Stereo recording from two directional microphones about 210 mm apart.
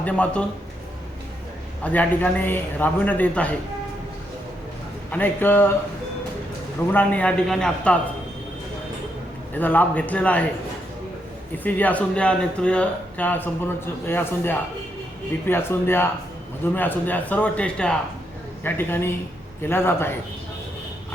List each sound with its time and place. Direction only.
0.0 s a man's voice: 5° left (ahead or behind)
1.8 s speech: 5° left (ahead or behind)
5.1 s speech: 10° left (ahead or behind)
6.9 s a man's voice: 5° left (ahead or behind)
9.6 s speech: 10° left (ahead or behind)
11.6 s speech: 10° left (ahead or behind)